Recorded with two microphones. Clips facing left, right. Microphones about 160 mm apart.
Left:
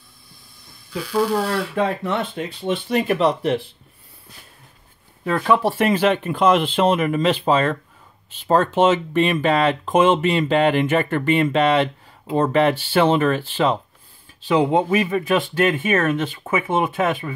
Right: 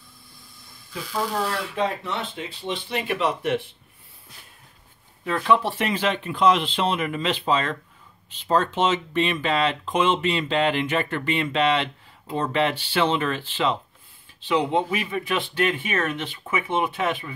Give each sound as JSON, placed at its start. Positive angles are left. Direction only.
{"t": 1.8, "sound": "speech", "side_deg": 50}
{"t": 5.2, "sound": "speech", "side_deg": 45}